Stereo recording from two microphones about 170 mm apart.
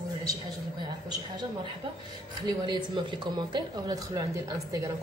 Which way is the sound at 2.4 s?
25° right (ahead or behind).